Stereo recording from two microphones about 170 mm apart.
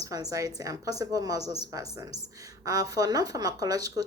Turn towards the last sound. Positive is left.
turn(degrees=-20)  # may be behind; listen again after turning